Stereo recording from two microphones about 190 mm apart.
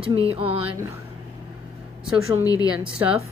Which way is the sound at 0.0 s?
30° right (ahead or behind).